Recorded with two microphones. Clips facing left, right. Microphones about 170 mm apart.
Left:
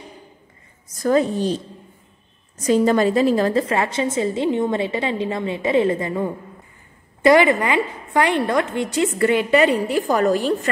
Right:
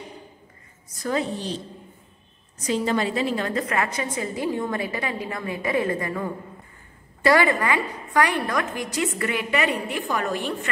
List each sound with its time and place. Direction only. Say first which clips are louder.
0.8 s a woman's voice: left 8 dB; 45° left (ahead or behind)
2.6 s a woman's voice: left 7 dB; 45° left (ahead or behind)